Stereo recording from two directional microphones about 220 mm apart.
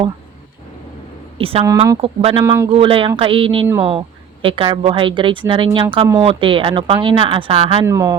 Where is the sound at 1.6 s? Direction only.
15° right (ahead or behind).